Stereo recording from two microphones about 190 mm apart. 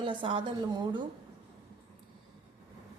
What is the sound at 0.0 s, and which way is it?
A woman's voice, 25° right (ahead or behind).